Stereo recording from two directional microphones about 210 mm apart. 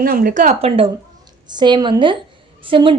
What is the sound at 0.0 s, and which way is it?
Speech, 45° right (ahead or behind).